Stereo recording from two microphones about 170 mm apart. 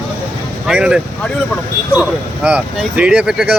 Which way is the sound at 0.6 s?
5° right (ahead or behind).